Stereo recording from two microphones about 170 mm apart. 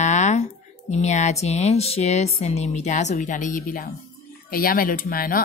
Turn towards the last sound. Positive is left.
turn(degrees=55)  # may be behind; listen again after turning